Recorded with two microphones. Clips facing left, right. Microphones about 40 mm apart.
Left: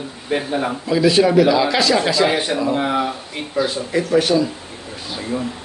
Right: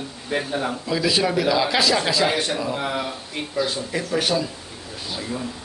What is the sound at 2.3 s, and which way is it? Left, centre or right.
Speech, centre.